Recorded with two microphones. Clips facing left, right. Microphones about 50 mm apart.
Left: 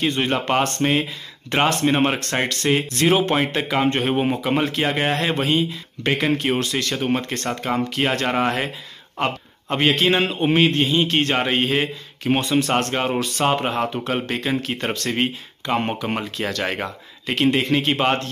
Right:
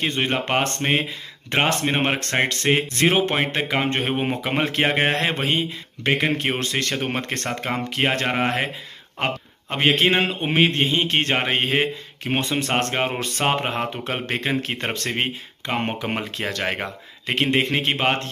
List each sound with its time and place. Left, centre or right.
0.0 s a man's voice: right
4.4 s a man's voice: right
6.3 s speech: right
7.7 s a man's voice: right
10.7 s a man's voice: right